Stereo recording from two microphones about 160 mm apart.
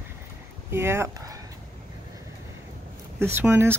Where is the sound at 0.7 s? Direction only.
15° right (ahead or behind).